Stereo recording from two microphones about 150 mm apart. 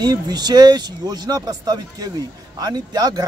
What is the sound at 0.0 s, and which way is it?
A man's voice, 25° right (ahead or behind).